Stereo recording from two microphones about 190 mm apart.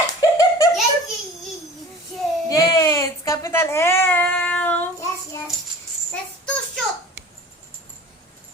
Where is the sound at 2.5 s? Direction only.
20° left (ahead or behind).